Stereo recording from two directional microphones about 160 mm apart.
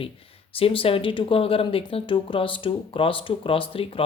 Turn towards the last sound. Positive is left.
turn(degrees=35)  # may be behind; listen again after turning